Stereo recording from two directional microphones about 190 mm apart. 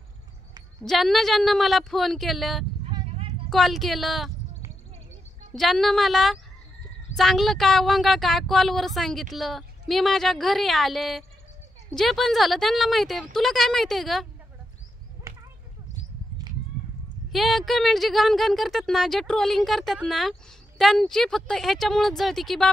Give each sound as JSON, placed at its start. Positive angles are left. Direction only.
{"t": 0.8, "sound": "speech", "side_deg": 0}
{"t": 2.8, "sound": "a sound", "side_deg": -30}
{"t": 3.4, "sound": "speech", "side_deg": 0}
{"t": 5.6, "sound": "speech", "side_deg": 0}
{"t": 15.3, "sound": "a sound", "side_deg": -15}
{"t": 17.3, "sound": "speech", "side_deg": 0}